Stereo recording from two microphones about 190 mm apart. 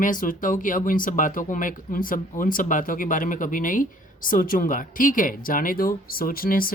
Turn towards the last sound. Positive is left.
turn(degrees=50)  # may be behind; listen again after turning